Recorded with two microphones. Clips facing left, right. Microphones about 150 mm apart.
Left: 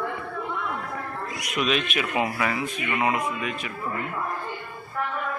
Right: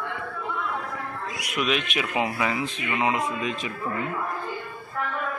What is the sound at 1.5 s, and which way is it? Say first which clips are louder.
A man's voice: left 1 dB; 10° right (ahead or behind).